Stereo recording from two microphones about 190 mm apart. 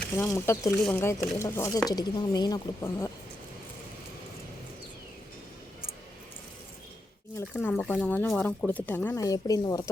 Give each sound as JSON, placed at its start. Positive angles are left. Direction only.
{"t": 0.2, "sound": "speech", "side_deg": 15}
{"t": 7.3, "sound": "speech", "side_deg": 10}